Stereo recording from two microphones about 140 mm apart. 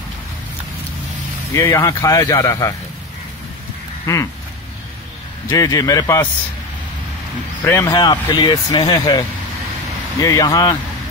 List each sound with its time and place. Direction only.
1.5 s speech: 20° left (ahead or behind)
4.0 s a sound: 20° left (ahead or behind)
5.5 s speech: 25° left (ahead or behind)
7.8 s speech: 30° left (ahead or behind)
10.2 s speech: 25° left (ahead or behind)